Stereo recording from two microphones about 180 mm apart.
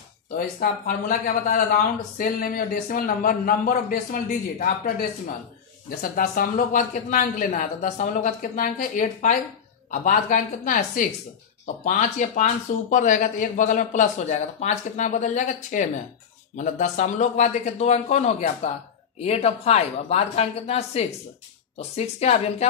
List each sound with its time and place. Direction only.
0.6 s a man's voice: 50° left (ahead or behind); by 22.7 s 35° left (ahead or behind)